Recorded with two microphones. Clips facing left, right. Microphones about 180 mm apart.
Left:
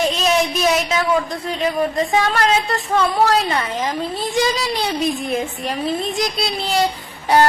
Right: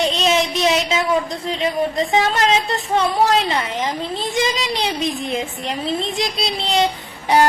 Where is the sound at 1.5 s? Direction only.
25° right (ahead or behind).